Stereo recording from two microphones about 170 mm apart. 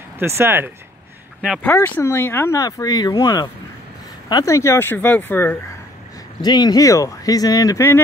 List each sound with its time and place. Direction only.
0.2 s speech: 15° right (ahead or behind)
1.8 s speech: 15° left (ahead or behind)
6.4 s speech: 25° left (ahead or behind)